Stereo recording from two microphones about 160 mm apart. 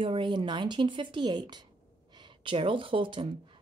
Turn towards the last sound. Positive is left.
turn(degrees=-30)  # may be behind; listen again after turning